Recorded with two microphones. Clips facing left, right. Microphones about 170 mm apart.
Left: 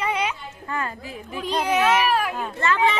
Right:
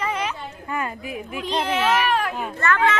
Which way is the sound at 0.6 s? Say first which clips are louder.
Right 1 dB; 15° right (ahead or behind).